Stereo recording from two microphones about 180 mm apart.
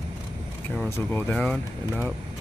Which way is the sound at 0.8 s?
15° left (ahead or behind).